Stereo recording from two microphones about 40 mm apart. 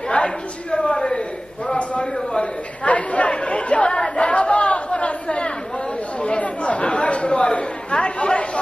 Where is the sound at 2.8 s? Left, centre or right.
Left.